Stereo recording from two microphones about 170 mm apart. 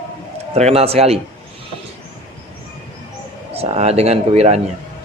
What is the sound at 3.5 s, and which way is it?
Speech, 35° right (ahead or behind).